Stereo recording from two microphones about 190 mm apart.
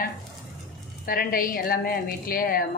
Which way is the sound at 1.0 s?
50° left (ahead or behind).